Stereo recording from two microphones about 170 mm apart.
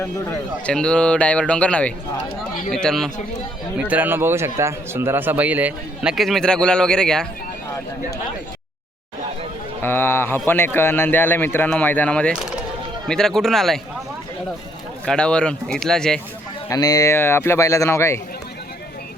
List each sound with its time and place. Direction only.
0.0 s a man's voice: 15° left (ahead or behind)
0.7 s a man's voice: 5° left (ahead or behind)
3.8 s a man's voice: 10° right (ahead or behind)
9.8 s a man's voice: 15° left (ahead or behind)
15.0 s speech: 5° left (ahead or behind)
16.6 s a man's voice: 20° left (ahead or behind)